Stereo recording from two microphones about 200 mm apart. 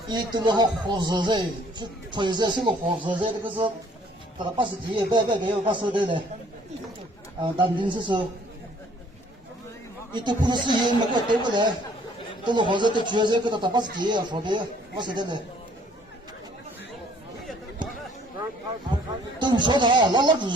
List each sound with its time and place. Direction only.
0.1 s a man's voice: 20° right (ahead or behind)
7.4 s a man's voice: 25° right (ahead or behind)
10.1 s a man's voice: 20° right (ahead or behind)
19.4 s a man's voice: 20° right (ahead or behind)